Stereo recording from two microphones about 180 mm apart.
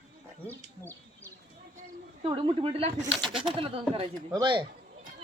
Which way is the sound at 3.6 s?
30° right (ahead or behind).